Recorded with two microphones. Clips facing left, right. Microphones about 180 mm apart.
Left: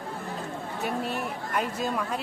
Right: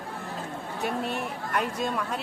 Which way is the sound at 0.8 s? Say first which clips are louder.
Right 1 dB; centre (ahead or behind).